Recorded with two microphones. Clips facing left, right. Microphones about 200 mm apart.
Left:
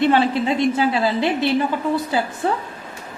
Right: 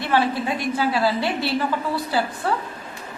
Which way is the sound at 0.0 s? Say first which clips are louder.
Left 5 dB; 20° left (ahead or behind).